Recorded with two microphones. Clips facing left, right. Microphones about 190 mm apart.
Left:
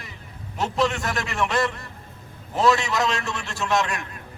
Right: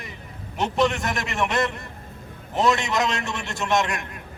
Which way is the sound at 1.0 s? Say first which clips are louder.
Even; 20° right (ahead or behind).